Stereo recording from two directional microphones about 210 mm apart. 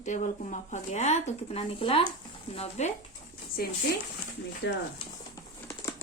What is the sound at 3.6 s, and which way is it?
Speech, 45° left (ahead or behind).